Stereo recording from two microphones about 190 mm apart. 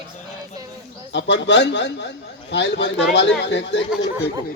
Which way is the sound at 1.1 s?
65° left (ahead or behind).